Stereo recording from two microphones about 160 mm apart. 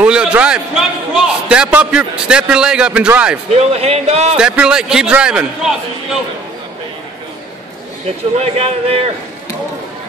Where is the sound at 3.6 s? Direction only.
40° right (ahead or behind).